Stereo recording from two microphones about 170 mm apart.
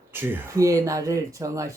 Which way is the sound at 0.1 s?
10° right (ahead or behind).